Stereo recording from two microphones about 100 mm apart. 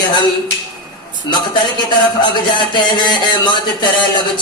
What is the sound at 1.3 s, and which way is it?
Speech, 50° left (ahead or behind).